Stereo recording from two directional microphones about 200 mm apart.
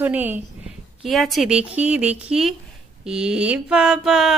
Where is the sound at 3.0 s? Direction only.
5° right (ahead or behind).